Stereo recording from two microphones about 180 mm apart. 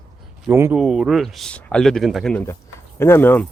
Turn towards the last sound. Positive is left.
turn(degrees=10)  # may be behind; listen again after turning